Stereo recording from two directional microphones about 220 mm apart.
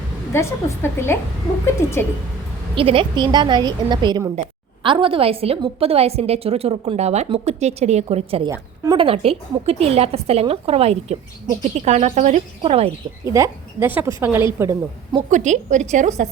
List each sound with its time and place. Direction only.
0.3 s a woman's voice: 10° left (ahead or behind)
2.7 s a woman's voice: 25° right (ahead or behind)
13.2 s a woman's voice: 15° right (ahead or behind)
15.3 s speech: 35° right (ahead or behind)